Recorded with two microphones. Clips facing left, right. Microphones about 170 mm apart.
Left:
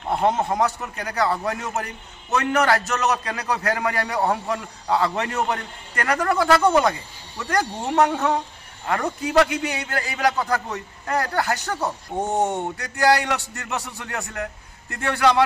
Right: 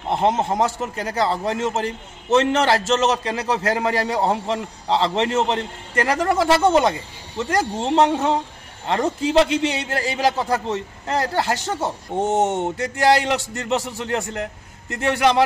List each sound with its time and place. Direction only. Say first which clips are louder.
0.1 s a man's voice: right 1 dB; 25° right (ahead or behind)